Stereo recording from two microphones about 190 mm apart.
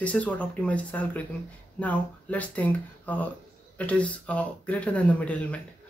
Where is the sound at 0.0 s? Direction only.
5° left (ahead or behind).